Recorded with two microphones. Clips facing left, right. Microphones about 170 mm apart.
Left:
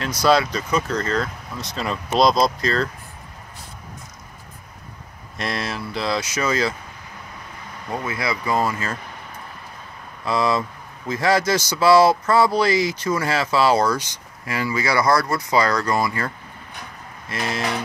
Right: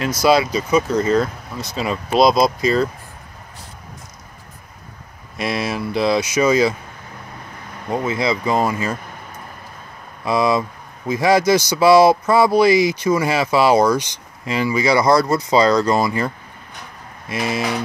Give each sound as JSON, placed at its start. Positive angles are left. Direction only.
{"t": 0.2, "sound": "speech", "side_deg": -10}
{"t": 5.4, "sound": "speech", "side_deg": -10}
{"t": 7.9, "sound": "speech", "side_deg": -20}
{"t": 10.2, "sound": "speech", "side_deg": -15}
{"t": 17.3, "sound": "speech", "side_deg": -15}